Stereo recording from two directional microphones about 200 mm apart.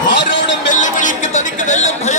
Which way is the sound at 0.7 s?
40° left (ahead or behind).